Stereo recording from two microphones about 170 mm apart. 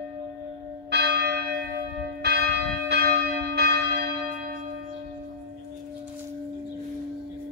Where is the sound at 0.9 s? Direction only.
80° right.